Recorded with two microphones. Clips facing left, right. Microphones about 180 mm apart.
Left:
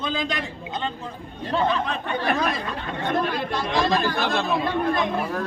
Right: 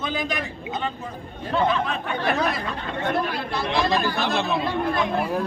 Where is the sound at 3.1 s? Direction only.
10° right (ahead or behind).